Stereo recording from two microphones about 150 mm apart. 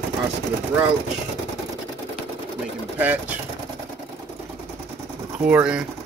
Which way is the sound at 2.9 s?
10° right (ahead or behind).